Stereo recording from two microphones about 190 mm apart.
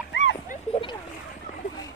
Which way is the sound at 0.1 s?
75° left (ahead or behind).